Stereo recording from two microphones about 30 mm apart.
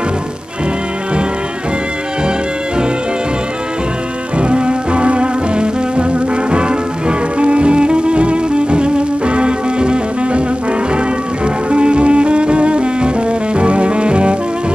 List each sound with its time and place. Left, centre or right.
4.4 s music: right
11.7 s music: right